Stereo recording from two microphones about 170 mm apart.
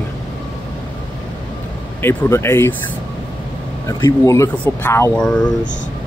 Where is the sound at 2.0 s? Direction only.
15° left (ahead or behind).